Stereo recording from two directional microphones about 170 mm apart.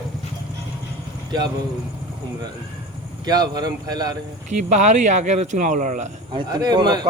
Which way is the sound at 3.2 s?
25° right (ahead or behind).